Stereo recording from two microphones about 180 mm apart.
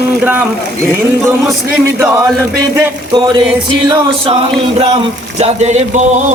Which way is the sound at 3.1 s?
25° right (ahead or behind).